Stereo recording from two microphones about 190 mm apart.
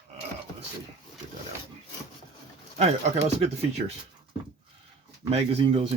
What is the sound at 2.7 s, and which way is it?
Speech, 35° right (ahead or behind).